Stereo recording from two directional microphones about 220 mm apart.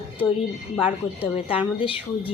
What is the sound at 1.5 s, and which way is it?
Speech, 25° left (ahead or behind).